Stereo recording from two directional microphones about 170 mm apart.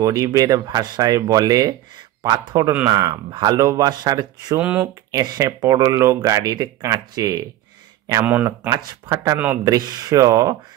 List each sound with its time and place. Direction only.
0.0 s speech: 20° right (ahead or behind)
4.6 s speech: 5° right (ahead or behind)
5.1 s speech: 20° right (ahead or behind)